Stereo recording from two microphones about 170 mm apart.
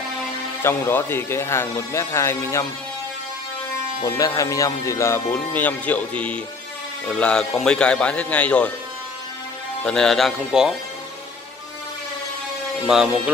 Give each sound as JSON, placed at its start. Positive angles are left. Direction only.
{"t": 0.6, "sound": "speech", "side_deg": 15}
{"t": 4.0, "sound": "speech", "side_deg": 20}
{"t": 9.8, "sound": "speech", "side_deg": 5}
{"t": 12.8, "sound": "speech", "side_deg": -5}